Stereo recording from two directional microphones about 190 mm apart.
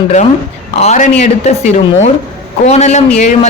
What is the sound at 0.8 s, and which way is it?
Speech, 35° left (ahead or behind).